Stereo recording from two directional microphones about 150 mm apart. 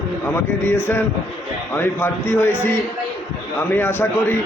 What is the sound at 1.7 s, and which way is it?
Speech, 15° left (ahead or behind).